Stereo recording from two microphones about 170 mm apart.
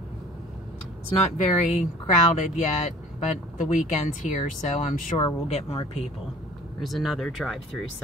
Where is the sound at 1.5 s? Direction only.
45° left (ahead or behind).